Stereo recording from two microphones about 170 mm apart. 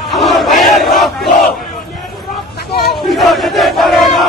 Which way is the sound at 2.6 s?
70° left (ahead or behind).